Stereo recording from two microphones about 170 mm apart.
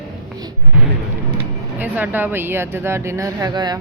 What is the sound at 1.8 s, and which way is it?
Speech, 10° right (ahead or behind).